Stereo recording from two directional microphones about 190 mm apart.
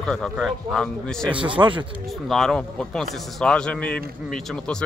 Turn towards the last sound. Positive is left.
turn(degrees=5)  # may be behind; listen again after turning